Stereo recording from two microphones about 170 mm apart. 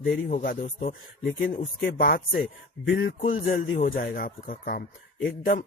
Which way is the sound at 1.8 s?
60° left (ahead or behind).